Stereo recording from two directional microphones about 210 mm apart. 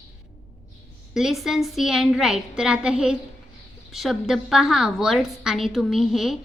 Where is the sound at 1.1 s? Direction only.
Centre (ahead or behind).